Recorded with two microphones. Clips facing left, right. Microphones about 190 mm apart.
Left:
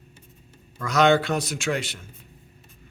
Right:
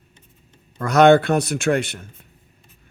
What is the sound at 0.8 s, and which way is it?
A man's voice, 55° right (ahead or behind).